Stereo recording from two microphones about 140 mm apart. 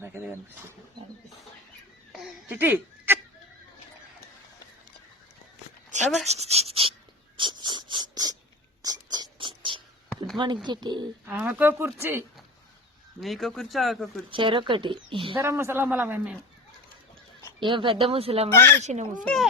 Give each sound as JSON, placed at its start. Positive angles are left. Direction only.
{"t": 0.0, "sound": "a man's voice", "side_deg": -15}
{"t": 2.1, "sound": "speech", "side_deg": -5}
{"t": 6.2, "sound": "speech", "side_deg": -50}
{"t": 7.3, "sound": "a sound", "side_deg": -35}
{"t": 10.3, "sound": "speech", "side_deg": -35}
{"t": 11.3, "sound": "a man's voice", "side_deg": -10}
{"t": 13.1, "sound": "speech", "side_deg": 0}
{"t": 14.3, "sound": "speech", "side_deg": -40}
{"t": 15.4, "sound": "a man's voice", "side_deg": -20}
{"t": 17.6, "sound": "speech", "side_deg": -35}
{"t": 18.5, "sound": "speech", "side_deg": 15}
{"t": 18.8, "sound": "a child's voice", "side_deg": -55}
{"t": 19.2, "sound": "speech", "side_deg": 5}